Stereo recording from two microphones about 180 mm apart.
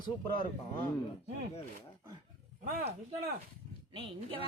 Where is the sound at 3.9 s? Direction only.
30° right (ahead or behind).